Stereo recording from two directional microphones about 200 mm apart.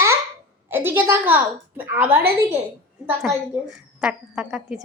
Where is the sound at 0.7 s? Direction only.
10° right (ahead or behind).